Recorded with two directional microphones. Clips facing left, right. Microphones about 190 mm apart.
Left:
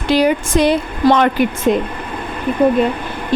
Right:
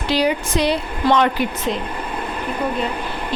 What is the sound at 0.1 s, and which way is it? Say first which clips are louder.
A woman's voice: left 5 dB; 50° left (ahead or behind).